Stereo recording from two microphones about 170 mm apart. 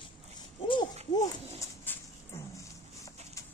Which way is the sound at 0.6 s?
30° left (ahead or behind).